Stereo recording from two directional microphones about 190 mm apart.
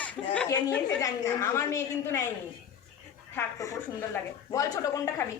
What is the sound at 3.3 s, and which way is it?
A woman's voice, 15° left (ahead or behind).